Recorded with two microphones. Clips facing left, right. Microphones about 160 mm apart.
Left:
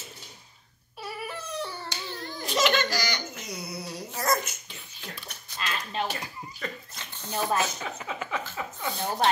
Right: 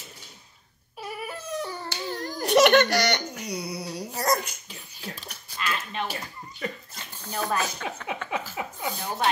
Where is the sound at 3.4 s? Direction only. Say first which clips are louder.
Right 4 dB; 10° right (ahead or behind).